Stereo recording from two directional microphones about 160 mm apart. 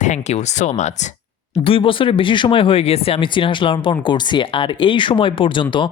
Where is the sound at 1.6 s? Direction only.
35° left (ahead or behind).